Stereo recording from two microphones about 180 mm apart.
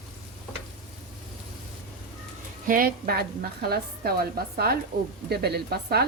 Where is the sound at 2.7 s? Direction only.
50° right (ahead or behind).